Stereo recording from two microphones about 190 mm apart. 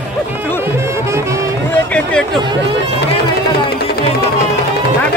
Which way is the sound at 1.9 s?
5° left (ahead or behind).